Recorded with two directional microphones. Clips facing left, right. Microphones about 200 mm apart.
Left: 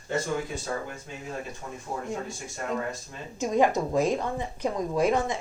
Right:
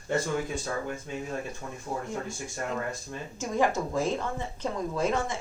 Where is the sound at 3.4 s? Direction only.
20° left (ahead or behind).